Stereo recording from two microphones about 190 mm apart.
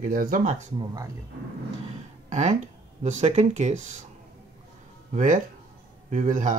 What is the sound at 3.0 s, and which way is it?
Speech, 35° right (ahead or behind).